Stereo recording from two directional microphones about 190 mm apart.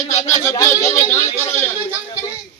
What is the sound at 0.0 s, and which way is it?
Speech, 35° left (ahead or behind).